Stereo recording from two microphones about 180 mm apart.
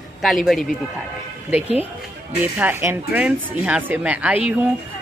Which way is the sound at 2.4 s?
10° right (ahead or behind).